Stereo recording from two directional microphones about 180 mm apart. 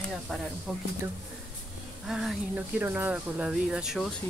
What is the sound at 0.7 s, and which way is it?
Speech, centre (ahead or behind).